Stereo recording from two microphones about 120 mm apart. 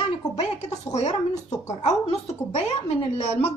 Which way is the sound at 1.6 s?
65° left (ahead or behind).